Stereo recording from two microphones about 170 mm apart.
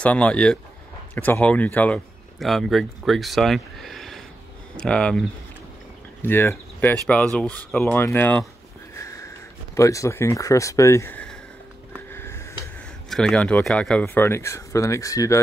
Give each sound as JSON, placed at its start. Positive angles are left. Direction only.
{"t": 0.0, "sound": "speech", "side_deg": 5}
{"t": 6.2, "sound": "speech", "side_deg": 15}
{"t": 8.9, "sound": "sniff", "side_deg": 20}
{"t": 9.8, "sound": "speech", "side_deg": 20}
{"t": 12.1, "sound": "a sound", "side_deg": 15}
{"t": 13.1, "sound": "speech", "side_deg": 5}